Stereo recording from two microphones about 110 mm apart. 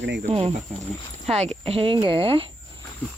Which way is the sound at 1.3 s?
75° right (ahead or behind).